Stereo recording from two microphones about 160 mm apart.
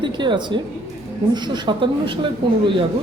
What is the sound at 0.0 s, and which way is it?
A woman's voice, 30° right (ahead or behind).